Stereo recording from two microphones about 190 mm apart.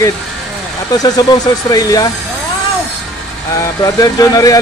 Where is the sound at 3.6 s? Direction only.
20° left (ahead or behind).